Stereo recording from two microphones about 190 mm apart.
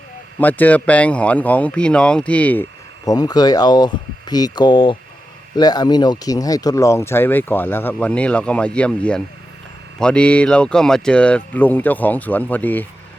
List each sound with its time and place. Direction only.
0.3 s speech: 10° left (ahead or behind)
3.1 s speech: 20° left (ahead or behind)